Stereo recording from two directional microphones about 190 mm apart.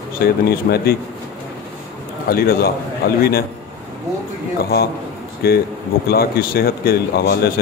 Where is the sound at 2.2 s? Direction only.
50° left (ahead or behind).